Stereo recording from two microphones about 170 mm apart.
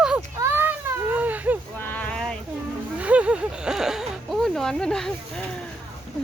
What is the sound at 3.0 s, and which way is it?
Speech, 10° right (ahead or behind).